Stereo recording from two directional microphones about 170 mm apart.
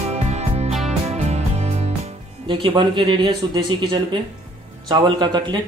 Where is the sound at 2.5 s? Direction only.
30° right (ahead or behind).